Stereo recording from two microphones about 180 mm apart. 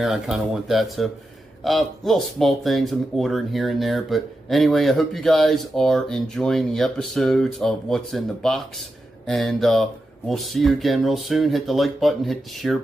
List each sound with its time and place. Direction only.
0.0 s speech: centre (ahead or behind)